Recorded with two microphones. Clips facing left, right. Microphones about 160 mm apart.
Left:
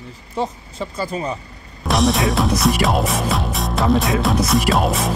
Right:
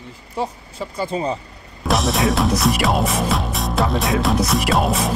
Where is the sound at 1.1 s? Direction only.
30° right (ahead or behind).